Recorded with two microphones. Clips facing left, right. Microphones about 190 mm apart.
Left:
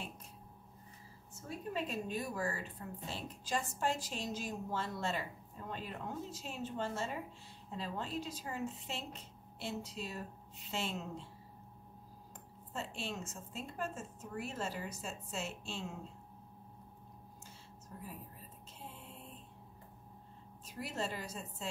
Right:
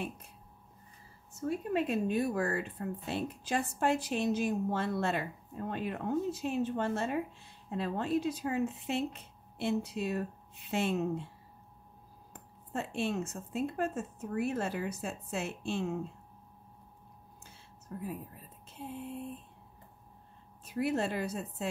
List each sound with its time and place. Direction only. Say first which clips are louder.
1.7 s a woman's voice: right 7 dB; 60° right (ahead or behind)
12.7 s a woman's voice: right 9 dB; 60° right (ahead or behind)
17.9 s speech: right 9 dB; 65° right (ahead or behind)
20.6 s a woman's voice: right 9 dB; 60° right (ahead or behind)